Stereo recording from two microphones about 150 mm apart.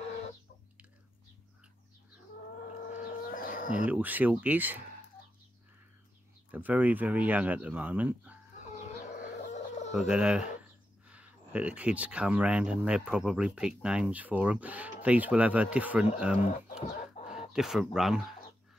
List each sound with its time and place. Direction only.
2.9 s a sound: 70° left (ahead or behind)
3.8 s speech: 10° right (ahead or behind)
6.5 s speech: 10° right (ahead or behind)
8.8 s chicken: 50° left (ahead or behind)
9.9 s speech: 5° right (ahead or behind)
16.3 s speech: 50° left (ahead or behind)
17.2 s chicken: 45° left (ahead or behind)
17.5 s speech: centre (ahead or behind)